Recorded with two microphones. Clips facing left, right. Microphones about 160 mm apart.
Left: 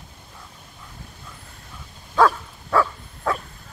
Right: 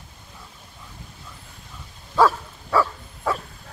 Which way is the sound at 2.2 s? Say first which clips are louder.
Even; 5° right (ahead or behind).